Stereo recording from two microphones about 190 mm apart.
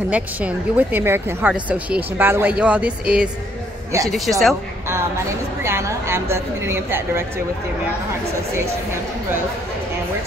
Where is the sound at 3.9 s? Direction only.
15° right (ahead or behind).